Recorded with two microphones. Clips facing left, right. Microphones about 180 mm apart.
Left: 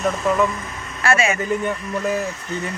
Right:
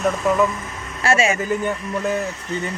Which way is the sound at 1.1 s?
40° right (ahead or behind).